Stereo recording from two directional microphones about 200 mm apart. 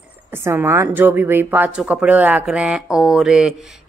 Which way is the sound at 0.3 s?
10° right (ahead or behind).